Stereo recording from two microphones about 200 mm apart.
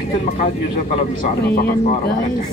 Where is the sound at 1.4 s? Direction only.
55° left (ahead or behind).